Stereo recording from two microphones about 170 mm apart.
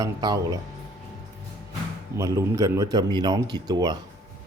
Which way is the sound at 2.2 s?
20° right (ahead or behind).